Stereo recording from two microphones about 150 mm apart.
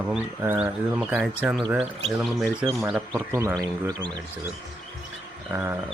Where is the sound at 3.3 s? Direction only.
20° right (ahead or behind).